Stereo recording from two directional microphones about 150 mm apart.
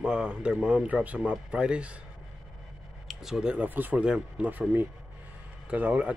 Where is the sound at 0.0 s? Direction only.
5° right (ahead or behind).